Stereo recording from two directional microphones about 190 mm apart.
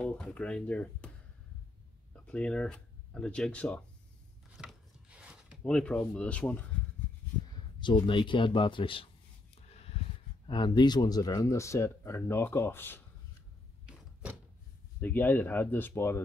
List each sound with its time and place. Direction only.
0.0 s speech: 5° left (ahead or behind)
2.2 s speech: 5° left (ahead or behind)
4.6 s a sound: 5° right (ahead or behind)
5.6 s speech: 5° left (ahead or behind)
7.8 s speech: 25° left (ahead or behind)
9.6 s a sound: 30° left (ahead or behind)
10.5 s speech: 25° left (ahead or behind)
15.0 s speech: 10° left (ahead or behind)